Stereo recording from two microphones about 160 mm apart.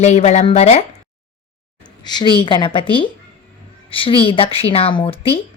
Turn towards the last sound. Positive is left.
turn(degrees=35)  # may be behind; listen again after turning